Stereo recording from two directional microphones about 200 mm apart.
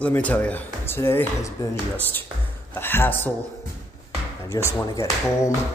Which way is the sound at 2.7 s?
10° left (ahead or behind).